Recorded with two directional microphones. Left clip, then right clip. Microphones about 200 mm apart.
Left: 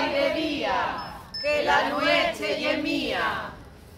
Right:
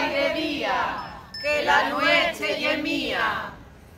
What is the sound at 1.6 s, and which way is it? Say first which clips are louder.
Speech: right 3 dB; 5° left (ahead or behind).